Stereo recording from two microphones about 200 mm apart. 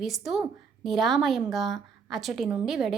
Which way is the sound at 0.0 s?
Centre (ahead or behind).